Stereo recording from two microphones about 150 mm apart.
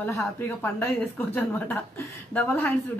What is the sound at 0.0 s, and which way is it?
Speech, 15° left (ahead or behind).